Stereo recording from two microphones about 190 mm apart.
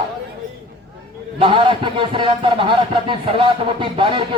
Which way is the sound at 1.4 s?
25° right (ahead or behind).